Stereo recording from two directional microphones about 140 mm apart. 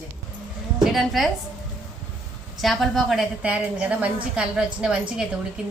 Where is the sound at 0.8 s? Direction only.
Centre (ahead or behind).